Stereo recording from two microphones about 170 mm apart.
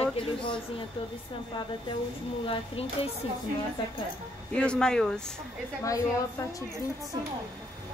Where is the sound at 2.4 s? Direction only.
35° left (ahead or behind).